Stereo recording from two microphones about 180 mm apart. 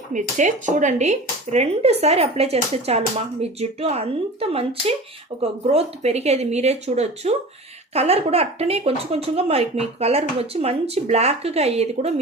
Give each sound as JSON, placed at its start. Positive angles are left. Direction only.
{"t": 0.1, "sound": "speech", "side_deg": -45}